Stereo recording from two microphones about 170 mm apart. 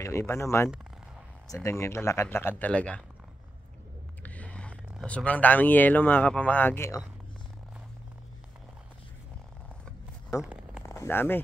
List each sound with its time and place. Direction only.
0.0 s speech: 15° left (ahead or behind)
4.2 s speech: 10° left (ahead or behind)
10.4 s a sound: 5° right (ahead or behind)
10.8 s zipper: 15° left (ahead or behind)